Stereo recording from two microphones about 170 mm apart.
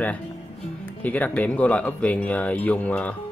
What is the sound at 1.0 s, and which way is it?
Speech, 10° left (ahead or behind).